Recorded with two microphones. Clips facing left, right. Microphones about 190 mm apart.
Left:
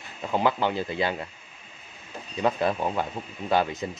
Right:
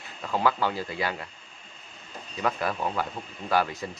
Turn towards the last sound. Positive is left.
turn(degrees=20)  # may be behind; listen again after turning